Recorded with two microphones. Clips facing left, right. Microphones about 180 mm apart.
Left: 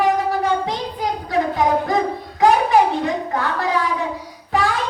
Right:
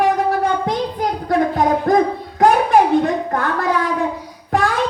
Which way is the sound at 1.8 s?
50° right (ahead or behind).